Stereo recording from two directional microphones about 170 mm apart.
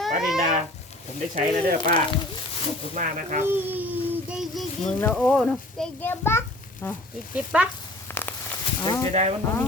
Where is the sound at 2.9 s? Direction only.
50° right (ahead or behind).